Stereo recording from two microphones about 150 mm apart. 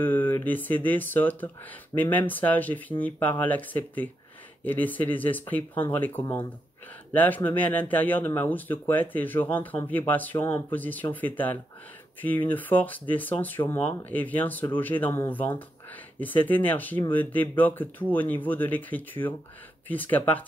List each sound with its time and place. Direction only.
0.0 s speech: 15° left (ahead or behind)